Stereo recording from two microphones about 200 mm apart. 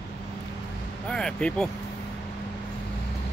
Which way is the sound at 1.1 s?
5° left (ahead or behind).